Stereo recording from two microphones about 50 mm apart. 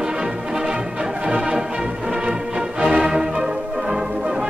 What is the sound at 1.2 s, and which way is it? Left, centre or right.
Music, centre.